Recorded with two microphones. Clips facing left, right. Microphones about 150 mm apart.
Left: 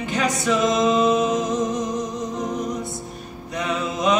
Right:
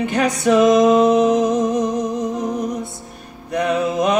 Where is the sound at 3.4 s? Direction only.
60° right (ahead or behind).